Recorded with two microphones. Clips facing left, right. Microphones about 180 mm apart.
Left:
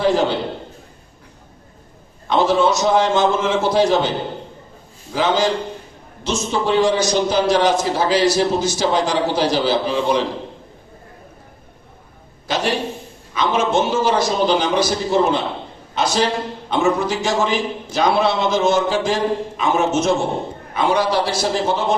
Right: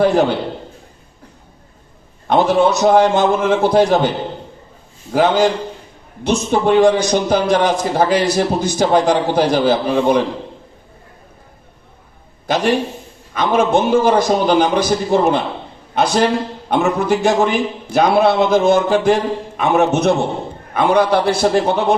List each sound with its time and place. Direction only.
0.0 s a man's voice: 55° right (ahead or behind)
2.5 s a man's voice: 60° right (ahead or behind)
5.1 s a man's voice: 55° right (ahead or behind)
12.5 s a man's voice: 55° right (ahead or behind)